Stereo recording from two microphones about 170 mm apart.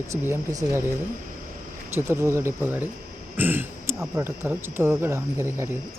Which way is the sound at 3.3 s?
10° right (ahead or behind).